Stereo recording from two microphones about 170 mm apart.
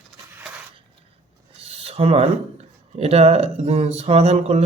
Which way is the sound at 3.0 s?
35° right (ahead or behind).